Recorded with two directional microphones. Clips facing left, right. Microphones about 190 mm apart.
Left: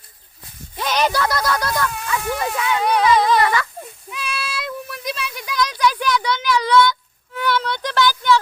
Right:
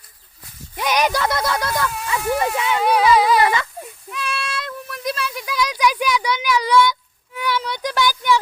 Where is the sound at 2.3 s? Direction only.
5° right (ahead or behind).